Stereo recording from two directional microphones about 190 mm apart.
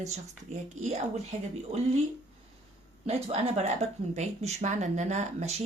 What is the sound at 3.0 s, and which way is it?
Speech, 35° right (ahead or behind).